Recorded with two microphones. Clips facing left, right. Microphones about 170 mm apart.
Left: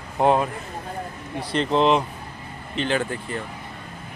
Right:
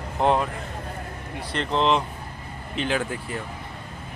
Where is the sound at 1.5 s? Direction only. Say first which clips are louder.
Left 3 dB; 15° left (ahead or behind).